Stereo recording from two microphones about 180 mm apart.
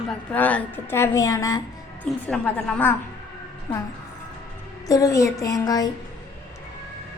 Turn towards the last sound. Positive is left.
turn(degrees=20)  # may be behind; listen again after turning